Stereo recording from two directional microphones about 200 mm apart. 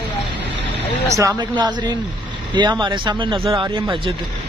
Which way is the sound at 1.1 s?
20° right (ahead or behind).